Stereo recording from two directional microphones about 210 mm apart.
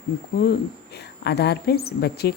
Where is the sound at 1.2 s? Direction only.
50° left (ahead or behind).